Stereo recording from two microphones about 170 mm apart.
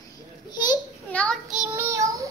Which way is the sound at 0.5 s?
25° left (ahead or behind).